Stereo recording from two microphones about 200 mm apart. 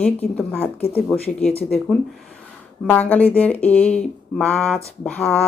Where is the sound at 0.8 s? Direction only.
30° left (ahead or behind).